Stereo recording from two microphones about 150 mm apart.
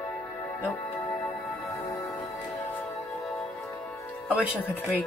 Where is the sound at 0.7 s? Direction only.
15° left (ahead or behind).